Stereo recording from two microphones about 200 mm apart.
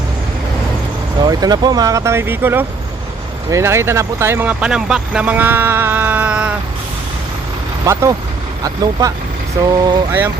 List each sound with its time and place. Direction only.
1.2 s speech: 20° right (ahead or behind)
8.6 s speech: 20° right (ahead or behind)